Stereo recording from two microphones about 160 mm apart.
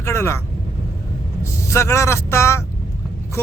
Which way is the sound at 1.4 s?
15° left (ahead or behind).